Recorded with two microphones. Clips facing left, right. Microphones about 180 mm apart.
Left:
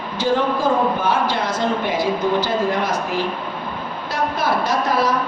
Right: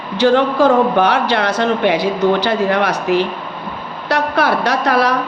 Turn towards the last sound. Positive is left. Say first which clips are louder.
# right 4 dB
turn(degrees=-70)  # may be behind; listen again after turning